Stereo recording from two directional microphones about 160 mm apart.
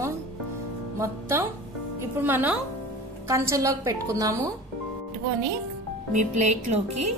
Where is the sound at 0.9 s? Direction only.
15° right (ahead or behind).